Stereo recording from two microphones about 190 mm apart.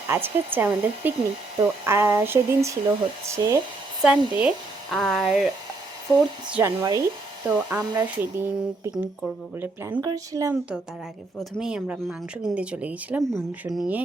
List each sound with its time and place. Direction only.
0.1 s speech: 10° right (ahead or behind)
4.4 s speech: centre (ahead or behind)
6.5 s speech: 15° right (ahead or behind)
7.4 s speech: 10° right (ahead or behind)
11.3 s speech: centre (ahead or behind)